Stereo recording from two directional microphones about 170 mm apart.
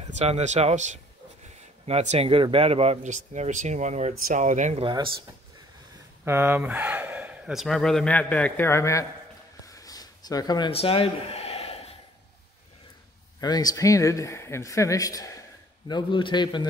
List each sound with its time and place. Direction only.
0.1 s speech: 40° right (ahead or behind)
4.8 s speech: 30° right (ahead or behind)
6.2 s speech: 10° right (ahead or behind); by 9.0 s 15° left (ahead or behind)
9.7 s a sound: 20° left (ahead or behind); by 11.9 s 40° left (ahead or behind)
13.4 s speech: 25° left (ahead or behind)